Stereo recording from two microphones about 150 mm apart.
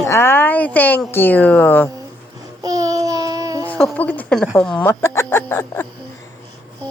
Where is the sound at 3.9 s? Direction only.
10° left (ahead or behind).